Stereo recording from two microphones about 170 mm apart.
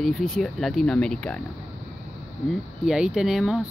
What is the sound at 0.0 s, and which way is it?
Speech, centre (ahead or behind).